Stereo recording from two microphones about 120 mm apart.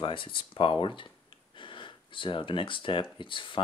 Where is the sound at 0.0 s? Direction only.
45° left (ahead or behind).